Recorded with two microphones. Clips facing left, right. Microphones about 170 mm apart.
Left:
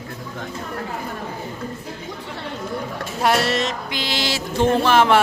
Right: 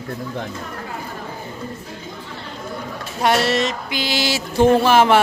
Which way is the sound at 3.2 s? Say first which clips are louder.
Right 2 dB; centre (ahead or behind).